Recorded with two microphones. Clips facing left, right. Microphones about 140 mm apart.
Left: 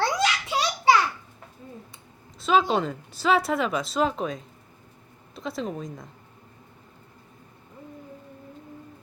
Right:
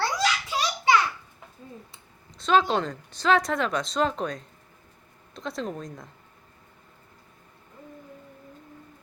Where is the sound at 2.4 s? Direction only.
5° left (ahead or behind).